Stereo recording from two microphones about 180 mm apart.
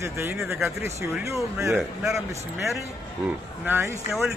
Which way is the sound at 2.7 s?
5° right (ahead or behind).